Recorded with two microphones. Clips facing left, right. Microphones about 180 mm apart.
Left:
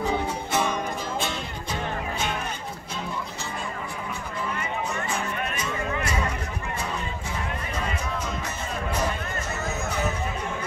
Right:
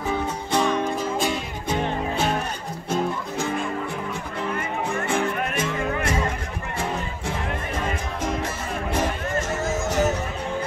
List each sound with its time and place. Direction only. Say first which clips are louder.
0.5 s music: right 4 dB; 5° left (ahead or behind)
2.9 s music: right 10 dB; 50° right (ahead or behind)
4.6 s music: right 3 dB; 55° right (ahead or behind)
9.7 s music: right 6 dB; 90° right